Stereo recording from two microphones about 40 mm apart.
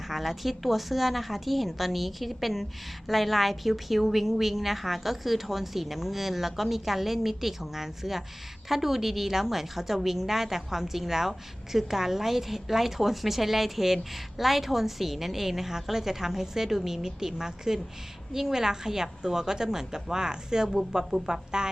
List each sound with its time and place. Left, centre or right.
0.1 s a woman's voice: centre